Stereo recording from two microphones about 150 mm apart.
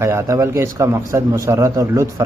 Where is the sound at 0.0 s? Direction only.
20° right (ahead or behind).